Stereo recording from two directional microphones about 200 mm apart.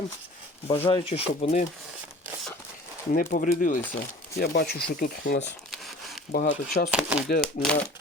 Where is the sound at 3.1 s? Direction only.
45° left (ahead or behind).